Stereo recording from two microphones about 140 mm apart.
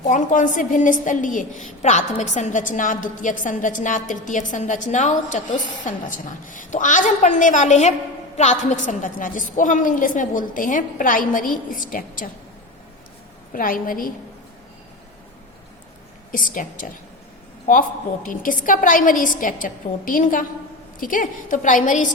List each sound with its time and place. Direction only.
0.1 s a woman's voice: 65° left (ahead or behind); by 12.3 s 85° left
13.5 s a woman's voice: 80° left
16.3 s a woman's voice: 75° left (ahead or behind)